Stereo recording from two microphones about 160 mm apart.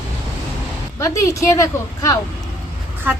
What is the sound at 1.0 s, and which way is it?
A woman's voice, 20° left (ahead or behind).